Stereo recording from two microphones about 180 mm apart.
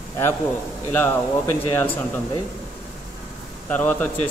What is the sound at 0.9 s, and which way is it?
Speech, 10° left (ahead or behind).